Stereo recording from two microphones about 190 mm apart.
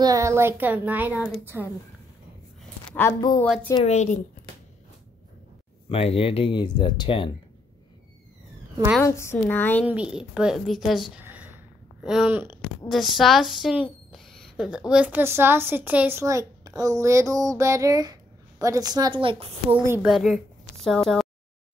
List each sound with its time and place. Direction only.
0.0 s a woman's voice: 15° right (ahead or behind)
2.9 s a woman's voice: 15° left (ahead or behind)
3.8 s speech: 40° left (ahead or behind)
5.9 s speech: 30° left (ahead or behind)
9.0 s a woman's voice: 15° left (ahead or behind)
9.8 s a woman's voice: 5° right (ahead or behind)
12.8 s a woman's voice: centre (ahead or behind); by 19.5 s 25° right (ahead or behind)
20.1 s a woman's voice: centre (ahead or behind)